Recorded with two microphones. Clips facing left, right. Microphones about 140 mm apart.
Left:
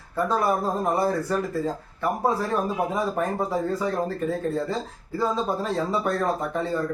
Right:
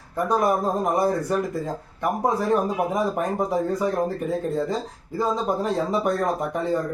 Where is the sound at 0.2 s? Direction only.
15° right (ahead or behind).